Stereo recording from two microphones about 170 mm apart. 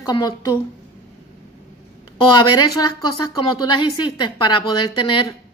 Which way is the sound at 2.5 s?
20° left (ahead or behind).